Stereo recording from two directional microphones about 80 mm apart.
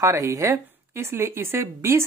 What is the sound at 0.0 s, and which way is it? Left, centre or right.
Speech, right.